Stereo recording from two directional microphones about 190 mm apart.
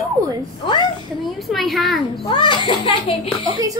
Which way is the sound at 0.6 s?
25° left (ahead or behind).